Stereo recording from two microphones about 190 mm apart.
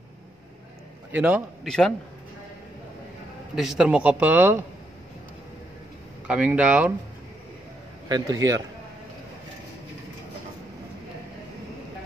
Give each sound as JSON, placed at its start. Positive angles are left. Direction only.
{"t": 1.1, "sound": "a man's voice", "side_deg": -5}
{"t": 3.5, "sound": "speech", "side_deg": 0}
{"t": 6.2, "sound": "speech", "side_deg": -5}
{"t": 8.1, "sound": "a man's voice", "side_deg": -20}